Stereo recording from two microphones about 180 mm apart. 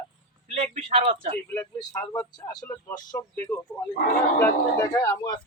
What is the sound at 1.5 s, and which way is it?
Speech, 15° left (ahead or behind).